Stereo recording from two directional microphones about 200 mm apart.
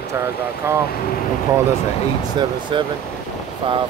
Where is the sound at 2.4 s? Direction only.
25° right (ahead or behind).